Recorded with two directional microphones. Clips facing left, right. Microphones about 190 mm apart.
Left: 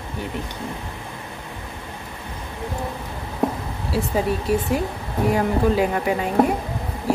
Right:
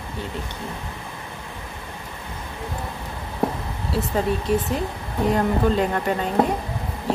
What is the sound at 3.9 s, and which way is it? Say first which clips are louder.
Speech: left 1 dB; 10° left (ahead or behind).